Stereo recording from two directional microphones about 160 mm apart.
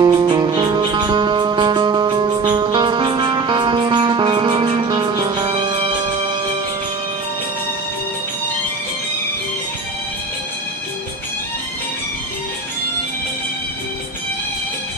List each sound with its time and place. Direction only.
0.0 s music: 25° right (ahead or behind)